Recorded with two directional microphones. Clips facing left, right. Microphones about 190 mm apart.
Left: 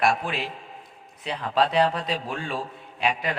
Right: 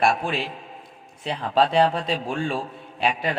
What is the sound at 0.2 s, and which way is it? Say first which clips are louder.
A man's voice: right 3 dB; 30° right (ahead or behind).